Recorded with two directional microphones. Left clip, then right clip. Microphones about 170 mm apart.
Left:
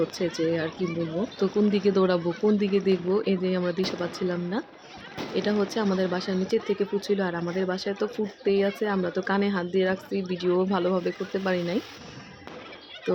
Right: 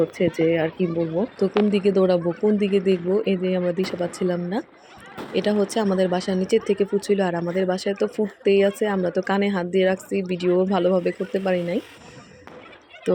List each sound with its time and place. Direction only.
0.3 s speech: 10° right (ahead or behind)